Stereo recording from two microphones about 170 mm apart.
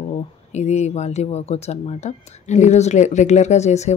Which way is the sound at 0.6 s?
40° left (ahead or behind).